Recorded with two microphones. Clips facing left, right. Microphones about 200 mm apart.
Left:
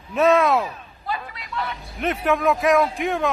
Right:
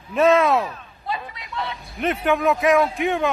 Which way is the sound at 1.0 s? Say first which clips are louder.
Even; 20° right (ahead or behind).